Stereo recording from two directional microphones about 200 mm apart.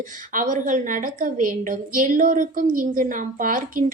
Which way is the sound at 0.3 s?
40° right (ahead or behind).